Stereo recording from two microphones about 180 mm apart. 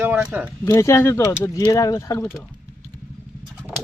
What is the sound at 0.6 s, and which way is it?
Speech, 15° left (ahead or behind).